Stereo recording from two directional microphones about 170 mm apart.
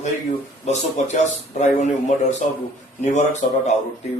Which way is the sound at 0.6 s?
40° left (ahead or behind).